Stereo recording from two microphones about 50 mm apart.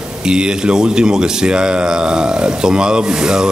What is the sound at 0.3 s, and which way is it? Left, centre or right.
Speech, centre.